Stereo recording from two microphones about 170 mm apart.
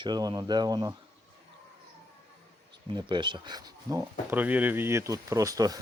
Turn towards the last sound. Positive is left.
turn(degrees=-20)  # may be behind; listen again after turning